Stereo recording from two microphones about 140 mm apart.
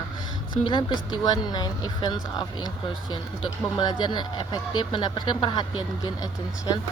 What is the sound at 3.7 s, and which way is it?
Speech, 30° left (ahead or behind).